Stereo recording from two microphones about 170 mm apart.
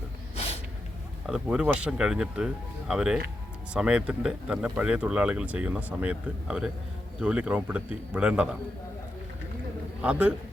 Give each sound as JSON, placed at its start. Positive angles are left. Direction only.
{"t": 0.3, "sound": "snort", "side_deg": 40}
{"t": 1.3, "sound": "a man's voice", "side_deg": -5}
{"t": 10.0, "sound": "a man's voice", "side_deg": -5}